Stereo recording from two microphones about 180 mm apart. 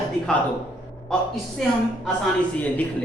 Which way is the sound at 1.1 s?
5° left (ahead or behind).